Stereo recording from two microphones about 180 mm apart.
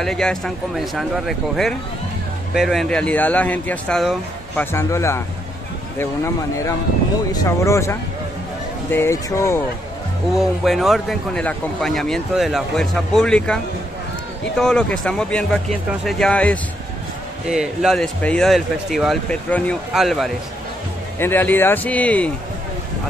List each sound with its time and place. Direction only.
0.0 s speech: 5° left (ahead or behind)
4.7 s speech: 15° left (ahead or behind)
10.3 s speech: centre (ahead or behind)
14.6 s speech: 5° left (ahead or behind)
21.2 s speech: 10° left (ahead or behind)